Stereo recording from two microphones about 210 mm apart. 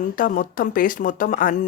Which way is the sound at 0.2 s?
40° left (ahead or behind).